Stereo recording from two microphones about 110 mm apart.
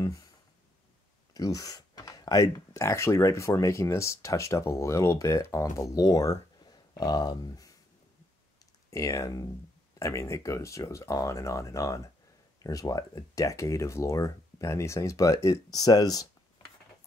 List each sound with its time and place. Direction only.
0.0 s a sound: 30° left (ahead or behind)
1.3 s speech: 35° left (ahead or behind)
8.9 s speech: 30° left (ahead or behind)